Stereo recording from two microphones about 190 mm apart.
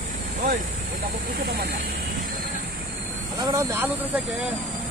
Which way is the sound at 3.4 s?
15° right (ahead or behind).